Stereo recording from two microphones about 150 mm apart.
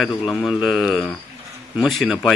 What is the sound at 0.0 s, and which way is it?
A woman's voice, centre (ahead or behind).